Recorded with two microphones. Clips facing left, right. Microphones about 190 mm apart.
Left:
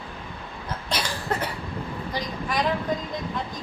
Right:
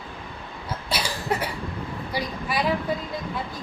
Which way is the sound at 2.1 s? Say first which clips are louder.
Right 1 dB; 10° right (ahead or behind).